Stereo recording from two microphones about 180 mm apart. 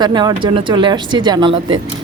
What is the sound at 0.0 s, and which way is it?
Speech, 25° right (ahead or behind).